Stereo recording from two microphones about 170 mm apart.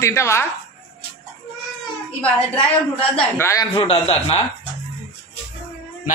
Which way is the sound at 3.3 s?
15° left (ahead or behind).